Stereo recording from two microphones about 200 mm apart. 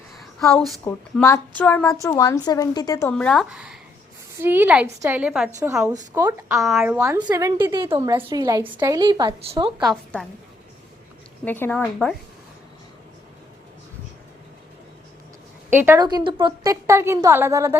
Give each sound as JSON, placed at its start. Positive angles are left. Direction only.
{"t": 0.2, "sound": "a sound", "side_deg": 0}
{"t": 1.2, "sound": "a woman's voice", "side_deg": 10}
{"t": 3.1, "sound": "a woman's voice", "side_deg": 5}
{"t": 6.5, "sound": "a woman's voice", "side_deg": 0}
{"t": 9.8, "sound": "speech", "side_deg": 0}
{"t": 11.4, "sound": "a woman's voice", "side_deg": 10}
{"t": 15.7, "sound": "a woman's voice", "side_deg": -10}